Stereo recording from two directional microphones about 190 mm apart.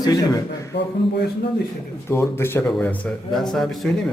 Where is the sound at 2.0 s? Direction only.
15° left (ahead or behind).